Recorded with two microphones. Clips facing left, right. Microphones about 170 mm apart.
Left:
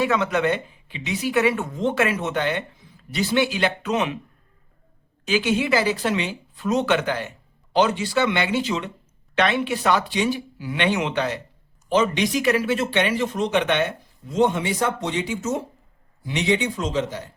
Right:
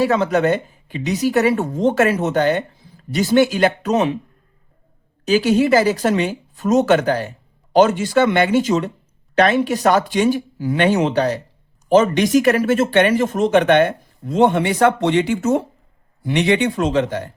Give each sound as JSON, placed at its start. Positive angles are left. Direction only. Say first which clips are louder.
{"t": 0.0, "sound": "a woman's voice", "louder": "right 5 dB", "side_deg": -35}
{"t": 5.2, "sound": "a woman's voice", "louder": "right 7 dB", "side_deg": -40}